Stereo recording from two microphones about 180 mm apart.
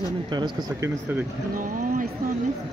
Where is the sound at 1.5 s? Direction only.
50° right (ahead or behind).